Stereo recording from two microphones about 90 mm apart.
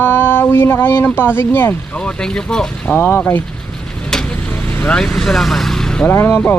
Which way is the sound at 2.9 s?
25° left (ahead or behind).